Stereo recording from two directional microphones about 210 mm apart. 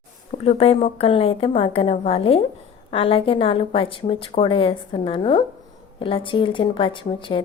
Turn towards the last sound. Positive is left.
turn(degrees=25)  # may be behind; listen again after turning